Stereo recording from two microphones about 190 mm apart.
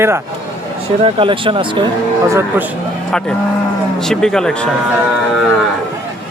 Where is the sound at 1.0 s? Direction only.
25° right (ahead or behind).